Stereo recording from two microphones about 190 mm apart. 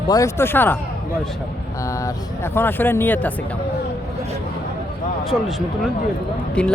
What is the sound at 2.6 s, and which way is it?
Speech, 10° left (ahead or behind).